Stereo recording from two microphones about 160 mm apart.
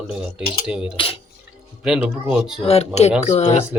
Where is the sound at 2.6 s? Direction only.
40° left (ahead or behind).